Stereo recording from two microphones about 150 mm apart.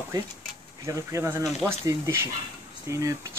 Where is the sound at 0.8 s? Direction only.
20° right (ahead or behind).